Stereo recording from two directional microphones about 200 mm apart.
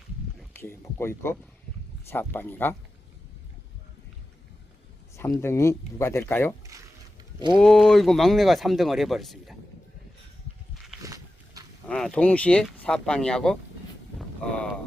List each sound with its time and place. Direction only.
0.5 s speech: 10° left (ahead or behind)
5.3 s speech: 10° left (ahead or behind)
6.6 s a sound: 15° right (ahead or behind)
7.3 s speech: 20° right (ahead or behind)
7.6 s speech: centre (ahead or behind)
11.0 s a sound: 15° right (ahead or behind)
11.9 s speech: 5° left (ahead or behind)